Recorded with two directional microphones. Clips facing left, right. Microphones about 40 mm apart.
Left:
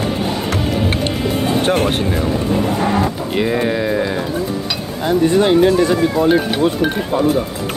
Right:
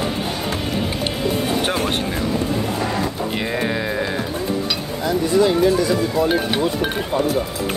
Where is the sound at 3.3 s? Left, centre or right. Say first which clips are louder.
Left 5 dB; centre.